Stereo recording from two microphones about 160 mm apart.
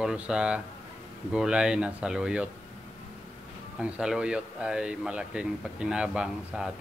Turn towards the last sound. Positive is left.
turn(degrees=-5)  # may be behind; listen again after turning